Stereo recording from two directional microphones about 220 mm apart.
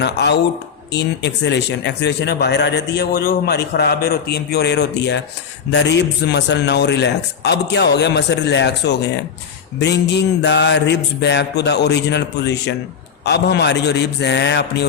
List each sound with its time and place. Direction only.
0.0 s speech: 50° left (ahead or behind)